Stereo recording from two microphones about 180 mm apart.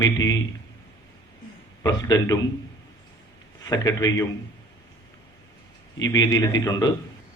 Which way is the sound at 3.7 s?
20° left (ahead or behind).